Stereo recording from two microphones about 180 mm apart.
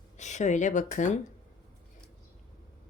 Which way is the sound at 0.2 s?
40° left (ahead or behind).